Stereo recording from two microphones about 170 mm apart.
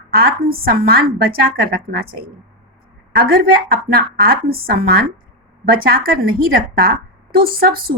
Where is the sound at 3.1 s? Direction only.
60° right (ahead or behind).